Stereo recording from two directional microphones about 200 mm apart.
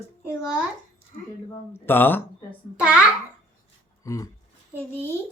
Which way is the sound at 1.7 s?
10° left (ahead or behind).